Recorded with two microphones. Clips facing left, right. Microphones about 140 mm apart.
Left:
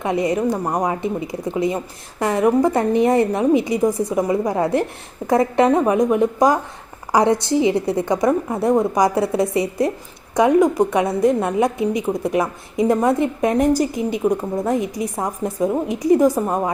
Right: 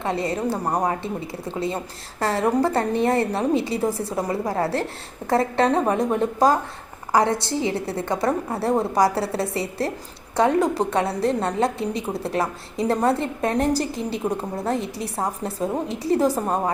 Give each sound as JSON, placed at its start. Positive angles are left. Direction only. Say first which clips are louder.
{"t": 0.0, "sound": "a woman's voice", "louder": "left 5 dB", "side_deg": 15}